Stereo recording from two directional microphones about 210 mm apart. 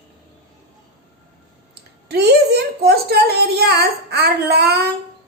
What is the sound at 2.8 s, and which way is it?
Speech, 50° right (ahead or behind).